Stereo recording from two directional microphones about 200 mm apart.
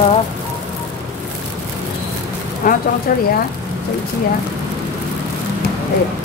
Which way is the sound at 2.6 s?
45° left (ahead or behind).